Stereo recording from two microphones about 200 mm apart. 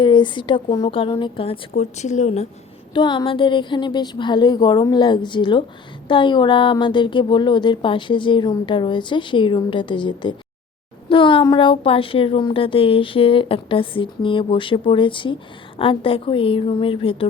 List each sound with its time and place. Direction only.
0.0 s a woman's voice: 25° left (ahead or behind)
2.9 s speech: 25° left (ahead or behind)